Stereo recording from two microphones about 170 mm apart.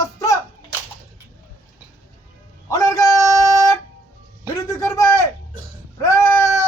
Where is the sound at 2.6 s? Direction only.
15° left (ahead or behind).